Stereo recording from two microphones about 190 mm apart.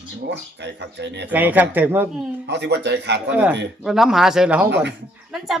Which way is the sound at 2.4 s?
65° right (ahead or behind).